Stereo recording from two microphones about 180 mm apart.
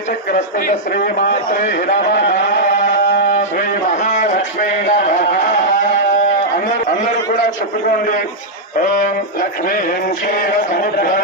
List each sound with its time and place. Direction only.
0.3 s a man's voice: 45° left (ahead or behind)
2.7 s a sound: 50° left (ahead or behind)
10.2 s a man's voice: 50° left (ahead or behind)